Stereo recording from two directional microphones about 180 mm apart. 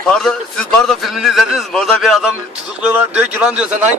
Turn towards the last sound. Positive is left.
turn(degrees=-5)  # may be behind; listen again after turning